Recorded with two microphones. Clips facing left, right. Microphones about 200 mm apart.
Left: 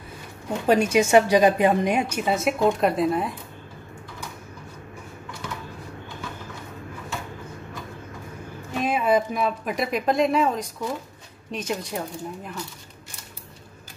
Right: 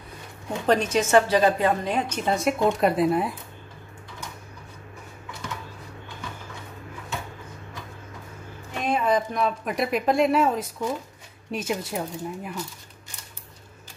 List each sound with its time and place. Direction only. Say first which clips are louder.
0.5 s a woman's voice: left 2 dB; 10° left (ahead or behind)
8.7 s speech: left 2 dB; 5° left (ahead or behind)